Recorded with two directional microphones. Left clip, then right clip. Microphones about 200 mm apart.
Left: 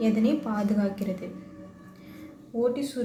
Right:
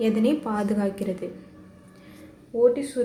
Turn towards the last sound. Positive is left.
turn(degrees=-20)  # may be behind; listen again after turning